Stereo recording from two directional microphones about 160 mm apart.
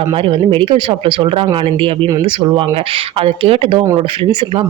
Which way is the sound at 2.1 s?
20° right (ahead or behind).